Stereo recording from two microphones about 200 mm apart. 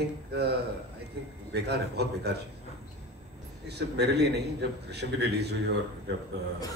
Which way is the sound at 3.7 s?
55° right (ahead or behind).